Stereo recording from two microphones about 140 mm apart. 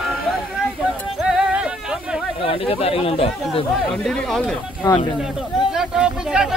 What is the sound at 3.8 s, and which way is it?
Speech, 5° left (ahead or behind).